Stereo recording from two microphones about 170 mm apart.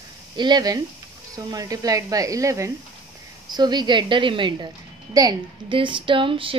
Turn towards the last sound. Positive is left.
turn(degrees=-30)  # may be behind; listen again after turning